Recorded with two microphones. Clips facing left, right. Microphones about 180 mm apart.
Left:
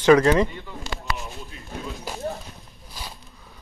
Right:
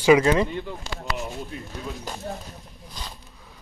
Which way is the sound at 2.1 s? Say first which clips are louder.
Left 1 dB; 10° left (ahead or behind).